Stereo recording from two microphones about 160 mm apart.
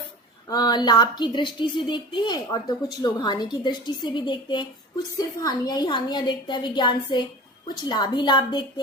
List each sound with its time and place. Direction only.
0.5 s a woman's voice: 25° left (ahead or behind)